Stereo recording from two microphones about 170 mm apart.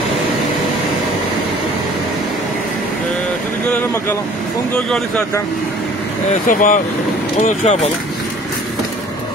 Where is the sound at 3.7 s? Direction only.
10° left (ahead or behind).